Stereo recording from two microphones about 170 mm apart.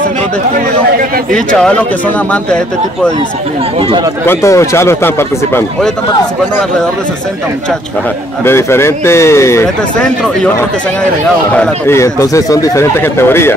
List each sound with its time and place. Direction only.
1.3 s speech: 5° left (ahead or behind)
4.3 s speech: 15° left (ahead or behind)
8.5 s speech: 15° left (ahead or behind)
11.5 s speech: 10° left (ahead or behind)